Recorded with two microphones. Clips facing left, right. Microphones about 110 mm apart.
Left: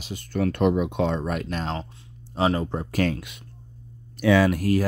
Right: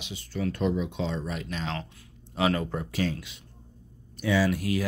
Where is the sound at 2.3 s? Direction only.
30° left (ahead or behind).